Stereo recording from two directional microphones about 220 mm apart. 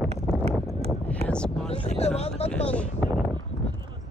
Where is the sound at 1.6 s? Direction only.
30° left (ahead or behind).